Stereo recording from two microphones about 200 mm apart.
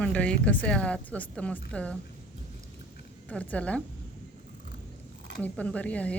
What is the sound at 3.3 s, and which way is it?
Speech, 5° left (ahead or behind).